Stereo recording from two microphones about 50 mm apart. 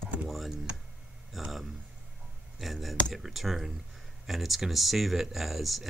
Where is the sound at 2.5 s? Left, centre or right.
Centre.